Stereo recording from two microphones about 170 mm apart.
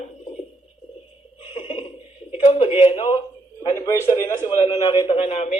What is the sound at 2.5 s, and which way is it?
A man's voice, 40° left (ahead or behind).